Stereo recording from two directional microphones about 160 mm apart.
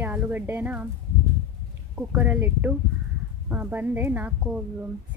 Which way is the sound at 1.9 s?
10° right (ahead or behind).